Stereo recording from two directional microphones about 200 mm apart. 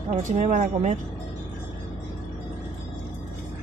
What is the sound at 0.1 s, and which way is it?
Speech, 35° right (ahead or behind).